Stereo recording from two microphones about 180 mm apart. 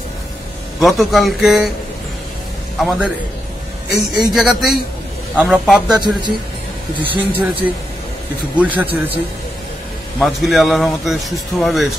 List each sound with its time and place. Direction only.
0.7 s speech: centre (ahead or behind)
2.8 s speech: 5° right (ahead or behind)
4.1 s speech: centre (ahead or behind)
5.9 s a man's voice: 25° right (ahead or behind)
7.0 s speech: 10° right (ahead or behind)
10.1 s speech: centre (ahead or behind)